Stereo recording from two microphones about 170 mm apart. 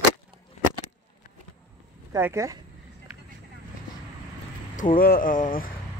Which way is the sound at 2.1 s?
15° right (ahead or behind).